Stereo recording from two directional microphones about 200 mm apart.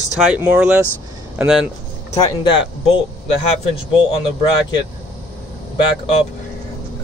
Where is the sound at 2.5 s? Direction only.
25° left (ahead or behind).